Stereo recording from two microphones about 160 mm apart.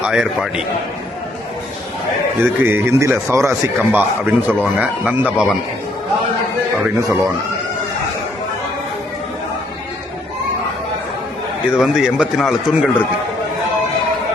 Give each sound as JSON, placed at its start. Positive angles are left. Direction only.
{"t": 0.0, "sound": "speech", "side_deg": -5}
{"t": 2.4, "sound": "speech", "side_deg": -15}
{"t": 6.7, "sound": "speech", "side_deg": 0}
{"t": 11.7, "sound": "speech", "side_deg": -5}